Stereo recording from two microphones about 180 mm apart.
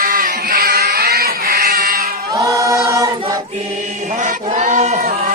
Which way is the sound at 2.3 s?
15° right (ahead or behind).